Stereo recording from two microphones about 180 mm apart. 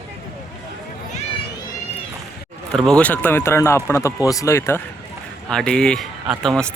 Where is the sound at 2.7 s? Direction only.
5° left (ahead or behind).